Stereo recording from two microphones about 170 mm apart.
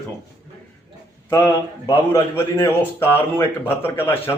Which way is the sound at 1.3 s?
20° left (ahead or behind).